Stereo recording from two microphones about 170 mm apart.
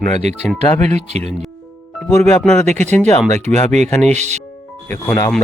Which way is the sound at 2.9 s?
10° left (ahead or behind).